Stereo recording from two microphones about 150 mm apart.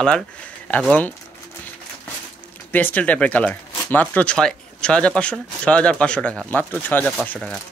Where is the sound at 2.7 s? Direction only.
10° left (ahead or behind).